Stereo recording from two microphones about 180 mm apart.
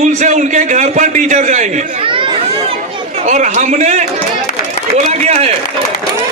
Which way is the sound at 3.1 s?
40° right (ahead or behind).